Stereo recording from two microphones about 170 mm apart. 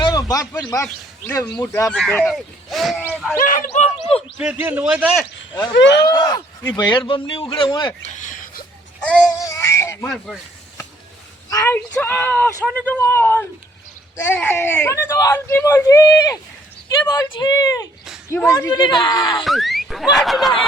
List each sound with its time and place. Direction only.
0.0 s a sound: 20° left (ahead or behind)
1.3 s speech: 20° left (ahead or behind); by 3.2 s 5° right (ahead or behind)
3.3 s speech: 55° left (ahead or behind); by 4.2 s 40° left (ahead or behind)
4.4 s a man's voice: 10° right (ahead or behind)
5.7 s speech: 90° left
6.0 s speech: 25° left (ahead or behind)
8.2 s a sound: 50° left (ahead or behind)
9.0 s child singing: 5° left (ahead or behind)
9.4 s a sound: 15° left (ahead or behind)
10.0 s speech: centre (ahead or behind)
11.9 s speech: 10° left (ahead or behind)
19.5 s speech: centre (ahead or behind)